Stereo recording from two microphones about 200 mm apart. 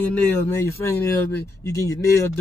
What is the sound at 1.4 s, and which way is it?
Speech, 15° left (ahead or behind).